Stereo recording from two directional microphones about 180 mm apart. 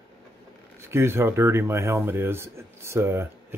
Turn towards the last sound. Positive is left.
turn(degrees=-15)  # may be behind; listen again after turning